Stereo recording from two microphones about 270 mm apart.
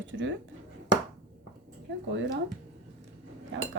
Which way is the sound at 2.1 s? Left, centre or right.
Right.